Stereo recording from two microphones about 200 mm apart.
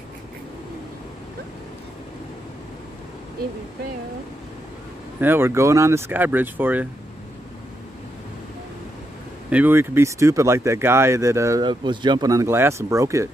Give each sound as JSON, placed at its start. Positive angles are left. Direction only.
{"t": 5.2, "sound": "speech", "side_deg": -10}
{"t": 9.5, "sound": "speech", "side_deg": -10}